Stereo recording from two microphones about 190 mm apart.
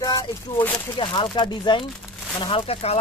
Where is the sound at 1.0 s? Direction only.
25° left (ahead or behind).